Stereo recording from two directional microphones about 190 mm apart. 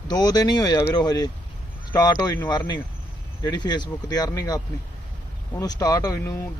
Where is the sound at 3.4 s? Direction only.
20° left (ahead or behind).